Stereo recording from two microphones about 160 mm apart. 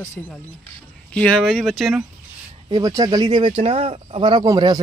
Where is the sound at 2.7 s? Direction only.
25° right (ahead or behind).